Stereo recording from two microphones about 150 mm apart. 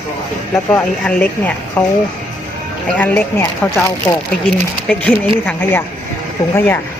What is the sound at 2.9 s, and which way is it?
Speech, 10° left (ahead or behind).